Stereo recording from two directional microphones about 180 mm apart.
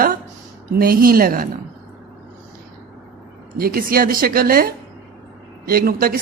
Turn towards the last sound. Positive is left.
turn(degrees=-55)  # may be behind; listen again after turning